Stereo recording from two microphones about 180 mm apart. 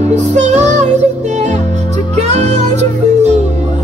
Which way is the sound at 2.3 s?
40° right (ahead or behind).